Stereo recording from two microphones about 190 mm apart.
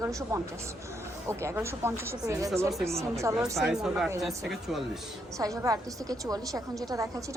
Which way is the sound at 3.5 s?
5° right (ahead or behind).